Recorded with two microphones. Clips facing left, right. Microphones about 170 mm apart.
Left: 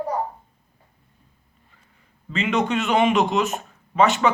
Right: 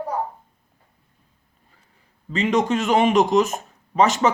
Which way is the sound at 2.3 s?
40° right (ahead or behind).